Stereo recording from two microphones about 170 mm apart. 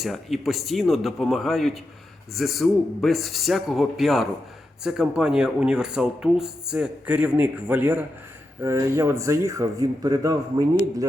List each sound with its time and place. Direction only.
0.0 s speech: centre (ahead or behind); by 11.0 s 20° right (ahead or behind)